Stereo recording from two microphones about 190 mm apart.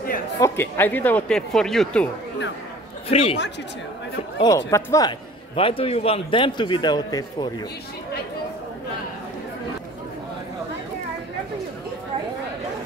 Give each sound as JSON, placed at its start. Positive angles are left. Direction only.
{"t": 0.4, "sound": "speech", "side_deg": 10}
{"t": 3.1, "sound": "a man's voice", "side_deg": 30}
{"t": 4.4, "sound": "speech", "side_deg": 15}
{"t": 5.6, "sound": "a man's voice", "side_deg": 30}